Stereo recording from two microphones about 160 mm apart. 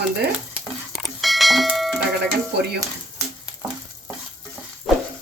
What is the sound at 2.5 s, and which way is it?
Speech, 90° right.